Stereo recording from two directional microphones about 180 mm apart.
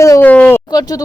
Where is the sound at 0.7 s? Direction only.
20° left (ahead or behind).